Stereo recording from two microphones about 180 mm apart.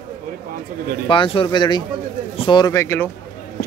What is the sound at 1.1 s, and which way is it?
A man's voice, 30° left (ahead or behind).